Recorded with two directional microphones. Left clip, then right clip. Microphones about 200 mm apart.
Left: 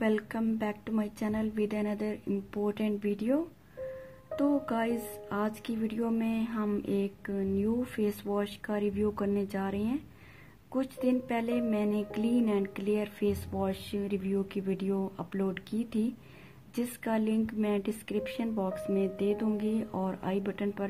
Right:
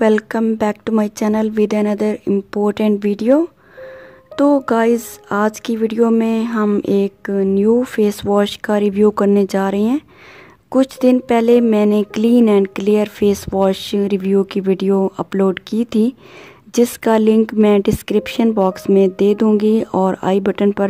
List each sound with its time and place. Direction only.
0.0 s speech: 50° right (ahead or behind)